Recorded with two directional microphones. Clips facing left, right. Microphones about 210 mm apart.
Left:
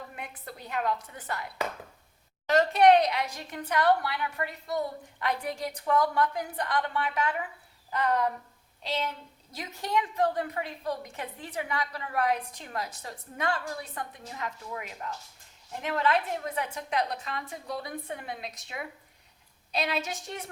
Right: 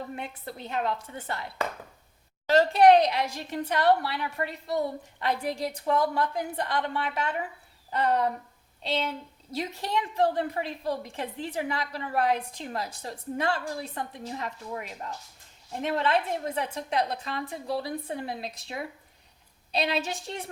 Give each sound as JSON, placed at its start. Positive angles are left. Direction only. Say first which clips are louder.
{"t": 0.2, "sound": "a woman's voice", "louder": "right 4 dB", "side_deg": -25}
{"t": 2.5, "sound": "a woman's voice", "louder": "right 2 dB", "side_deg": -30}